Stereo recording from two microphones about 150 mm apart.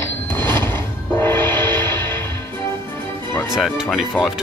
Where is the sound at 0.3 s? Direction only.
15° left (ahead or behind).